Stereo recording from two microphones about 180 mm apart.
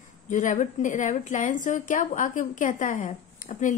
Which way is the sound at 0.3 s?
45° left (ahead or behind).